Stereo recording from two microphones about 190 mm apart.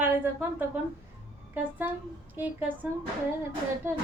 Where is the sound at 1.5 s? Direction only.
10° right (ahead or behind).